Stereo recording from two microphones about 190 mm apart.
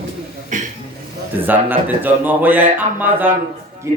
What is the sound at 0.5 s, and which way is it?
Speech, 40° right (ahead or behind).